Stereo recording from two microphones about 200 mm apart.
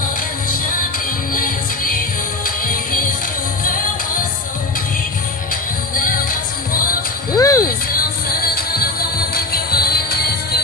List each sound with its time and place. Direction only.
1.3 s music: 45° left (ahead or behind)
5.5 s music: 45° left (ahead or behind)
7.3 s music: 15° left (ahead or behind)
7.6 s music: 50° left (ahead or behind)